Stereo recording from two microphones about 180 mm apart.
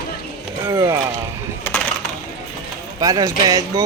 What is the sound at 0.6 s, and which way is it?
Speech, 15° right (ahead or behind).